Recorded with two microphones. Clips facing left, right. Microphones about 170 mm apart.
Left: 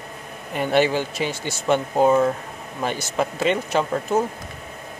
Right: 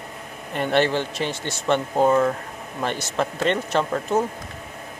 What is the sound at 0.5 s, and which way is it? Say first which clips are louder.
Speech: left 1 dB; 10° left (ahead or behind).